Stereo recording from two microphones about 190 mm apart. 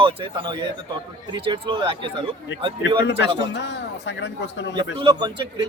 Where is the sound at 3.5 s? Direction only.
65° left (ahead or behind).